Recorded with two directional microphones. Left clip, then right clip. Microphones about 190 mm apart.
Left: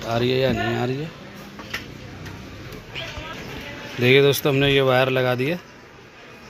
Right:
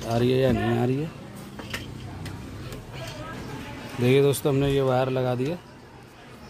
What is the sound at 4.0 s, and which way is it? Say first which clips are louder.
Speech: left 5 dB; 5° right (ahead or behind).